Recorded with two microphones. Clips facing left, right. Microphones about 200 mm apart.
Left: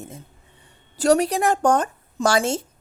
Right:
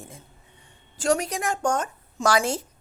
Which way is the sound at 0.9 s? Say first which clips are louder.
Left 6 dB; 35° left (ahead or behind).